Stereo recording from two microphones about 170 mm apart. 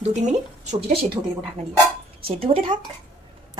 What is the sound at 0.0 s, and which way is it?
Speech, 40° right (ahead or behind).